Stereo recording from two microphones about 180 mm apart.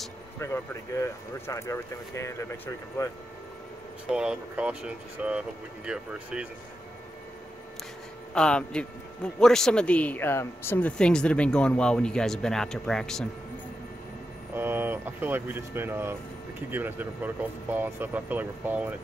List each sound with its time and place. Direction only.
0.4 s speech: 15° left (ahead or behind)
4.1 s a man's voice: 5° right (ahead or behind)
8.4 s a man's voice: 5° left (ahead or behind)
14.5 s speech: 10° right (ahead or behind)